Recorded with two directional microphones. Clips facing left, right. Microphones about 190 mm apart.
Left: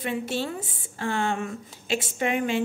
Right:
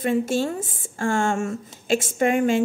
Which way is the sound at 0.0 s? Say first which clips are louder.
Right 7 dB; 45° right (ahead or behind).